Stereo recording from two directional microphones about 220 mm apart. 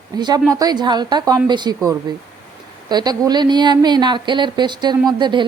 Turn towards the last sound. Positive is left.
turn(degrees=-20)  # may be behind; listen again after turning